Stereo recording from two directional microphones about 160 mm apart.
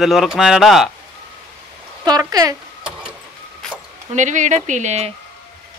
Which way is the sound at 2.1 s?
25° right (ahead or behind).